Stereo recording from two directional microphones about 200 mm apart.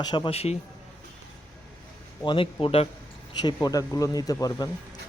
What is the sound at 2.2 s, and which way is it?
Speech, 25° left (ahead or behind).